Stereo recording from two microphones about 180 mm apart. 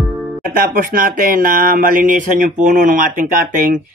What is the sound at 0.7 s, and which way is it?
Speech, 50° right (ahead or behind).